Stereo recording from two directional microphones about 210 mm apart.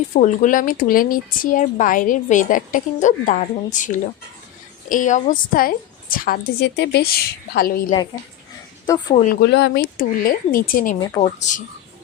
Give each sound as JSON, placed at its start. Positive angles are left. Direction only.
{"t": 0.1, "sound": "a woman's voice", "side_deg": 35}
{"t": 9.1, "sound": "a woman's voice", "side_deg": 40}